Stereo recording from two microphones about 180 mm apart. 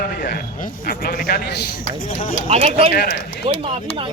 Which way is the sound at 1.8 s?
50° left (ahead or behind).